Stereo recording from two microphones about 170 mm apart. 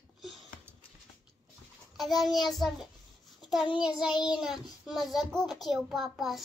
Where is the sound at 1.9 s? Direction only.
Centre (ahead or behind).